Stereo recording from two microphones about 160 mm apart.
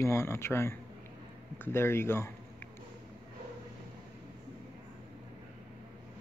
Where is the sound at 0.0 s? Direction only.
15° left (ahead or behind).